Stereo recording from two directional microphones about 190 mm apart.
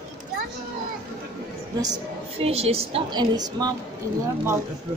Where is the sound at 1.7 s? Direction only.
20° right (ahead or behind).